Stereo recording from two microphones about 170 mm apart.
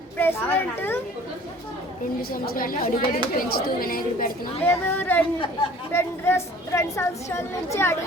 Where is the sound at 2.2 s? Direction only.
60° left (ahead or behind).